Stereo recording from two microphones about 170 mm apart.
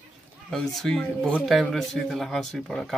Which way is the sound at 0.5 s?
5° left (ahead or behind).